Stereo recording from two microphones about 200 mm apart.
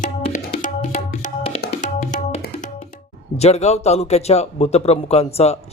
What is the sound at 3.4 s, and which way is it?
Speech, 35° left (ahead or behind).